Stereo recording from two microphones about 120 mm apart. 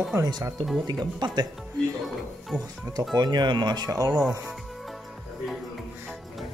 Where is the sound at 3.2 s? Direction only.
35° right (ahead or behind).